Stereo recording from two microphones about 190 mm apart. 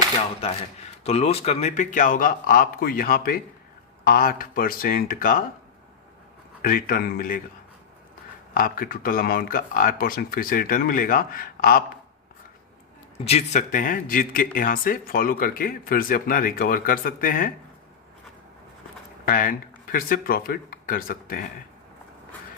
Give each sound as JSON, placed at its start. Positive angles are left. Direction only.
{"t": 1.0, "sound": "speech", "side_deg": 30}
{"t": 6.6, "sound": "speech", "side_deg": 45}
{"t": 8.5, "sound": "speech", "side_deg": 50}
{"t": 13.2, "sound": "speech", "side_deg": 35}
{"t": 19.2, "sound": "speech", "side_deg": 50}